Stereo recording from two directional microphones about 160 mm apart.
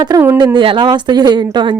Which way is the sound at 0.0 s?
20° right (ahead or behind).